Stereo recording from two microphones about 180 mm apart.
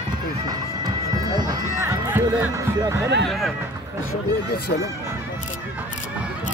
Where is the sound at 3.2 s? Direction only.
Centre (ahead or behind).